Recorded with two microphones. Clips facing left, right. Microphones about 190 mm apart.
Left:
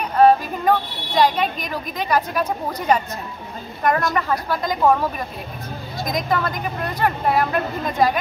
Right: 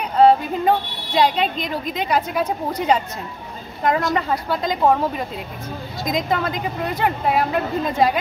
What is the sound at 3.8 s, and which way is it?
Speech, 20° right (ahead or behind).